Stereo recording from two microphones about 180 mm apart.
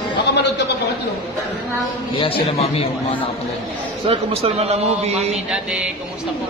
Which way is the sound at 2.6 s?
35° left (ahead or behind).